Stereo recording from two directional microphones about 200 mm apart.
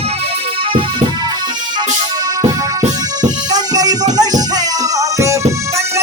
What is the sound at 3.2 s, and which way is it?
Music, 20° right (ahead or behind).